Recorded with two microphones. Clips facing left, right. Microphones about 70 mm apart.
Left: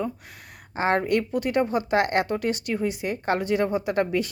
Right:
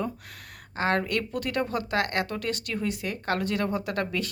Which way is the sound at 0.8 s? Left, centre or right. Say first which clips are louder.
Left 4 dB; left.